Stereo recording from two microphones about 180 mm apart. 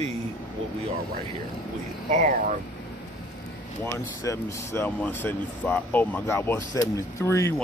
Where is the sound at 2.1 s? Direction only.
45° right (ahead or behind).